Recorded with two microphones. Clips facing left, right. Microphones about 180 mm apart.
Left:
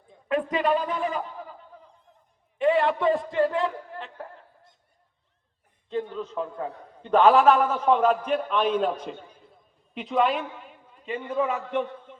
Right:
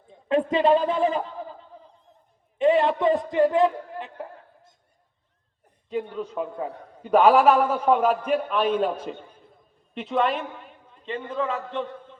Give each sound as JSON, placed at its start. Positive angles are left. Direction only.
{"t": 0.1, "sound": "a man's voice", "side_deg": -25}
{"t": 1.7, "sound": "fowl", "side_deg": -30}
{"t": 2.6, "sound": "a man's voice", "side_deg": -20}
{"t": 5.9, "sound": "a man's voice", "side_deg": -10}